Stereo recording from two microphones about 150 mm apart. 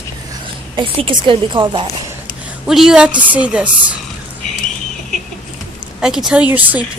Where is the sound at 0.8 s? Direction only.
35° right (ahead or behind).